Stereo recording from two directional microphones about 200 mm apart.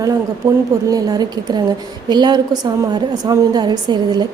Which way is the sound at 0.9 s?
20° right (ahead or behind).